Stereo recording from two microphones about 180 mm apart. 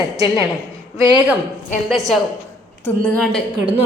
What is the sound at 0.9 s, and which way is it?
Speech, 20° right (ahead or behind).